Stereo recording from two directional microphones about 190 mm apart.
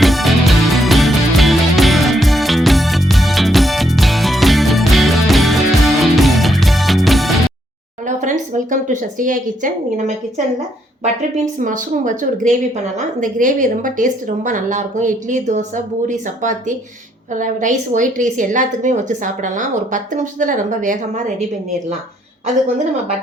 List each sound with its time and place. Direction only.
0.0 s music: centre (ahead or behind)
8.0 s a sound: 40° right (ahead or behind)
11.6 s a woman's voice: 40° right (ahead or behind)